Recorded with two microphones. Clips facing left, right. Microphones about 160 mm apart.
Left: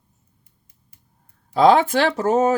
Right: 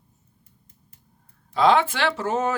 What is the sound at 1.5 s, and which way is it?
Speech, 40° left (ahead or behind).